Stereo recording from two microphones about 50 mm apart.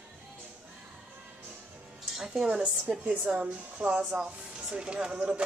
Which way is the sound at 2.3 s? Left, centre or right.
Centre.